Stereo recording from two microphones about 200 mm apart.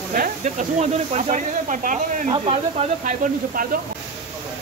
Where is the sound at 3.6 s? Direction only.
45° right (ahead or behind).